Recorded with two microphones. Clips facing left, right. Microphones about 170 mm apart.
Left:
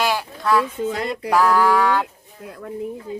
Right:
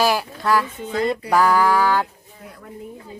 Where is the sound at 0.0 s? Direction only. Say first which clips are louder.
Right 2 dB; centre (ahead or behind).